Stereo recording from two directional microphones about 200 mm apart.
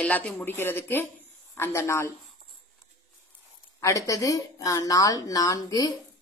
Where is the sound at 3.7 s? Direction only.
15° left (ahead or behind).